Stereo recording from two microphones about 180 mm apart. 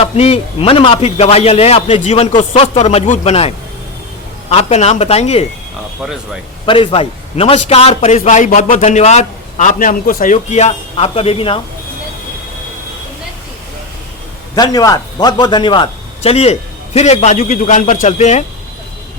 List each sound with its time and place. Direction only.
0.0 s a man's voice: 35° left (ahead or behind)
6.7 s a man's voice: 30° left (ahead or behind)
14.5 s a man's voice: 20° left (ahead or behind); by 18.4 s 40° left (ahead or behind)